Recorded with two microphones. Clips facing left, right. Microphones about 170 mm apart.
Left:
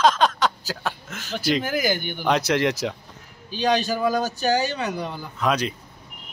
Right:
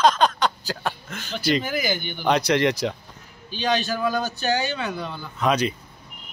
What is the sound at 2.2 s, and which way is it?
Speech, 5° left (ahead or behind).